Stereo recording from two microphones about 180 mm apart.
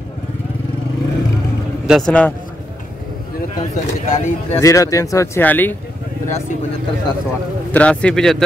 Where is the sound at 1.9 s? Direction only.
5° left (ahead or behind).